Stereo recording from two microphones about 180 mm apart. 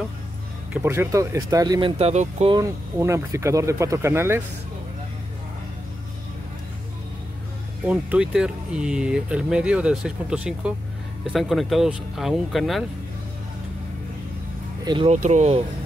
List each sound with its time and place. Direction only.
0.8 s speech: 15° right (ahead or behind); by 2.5 s 35° right (ahead or behind)
2.5 s speech: 15° right (ahead or behind)
7.8 s speech: 5° right (ahead or behind)
14.9 s speech: 30° right (ahead or behind)
15.1 s speech: 40° right (ahead or behind)